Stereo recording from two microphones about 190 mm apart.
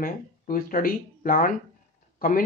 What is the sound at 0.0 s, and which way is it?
Speech, 50° left (ahead or behind).